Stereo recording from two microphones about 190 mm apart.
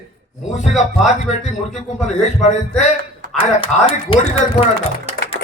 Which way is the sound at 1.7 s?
35° left (ahead or behind).